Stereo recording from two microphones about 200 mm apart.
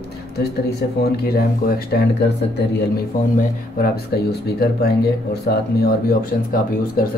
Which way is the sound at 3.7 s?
50° left (ahead or behind).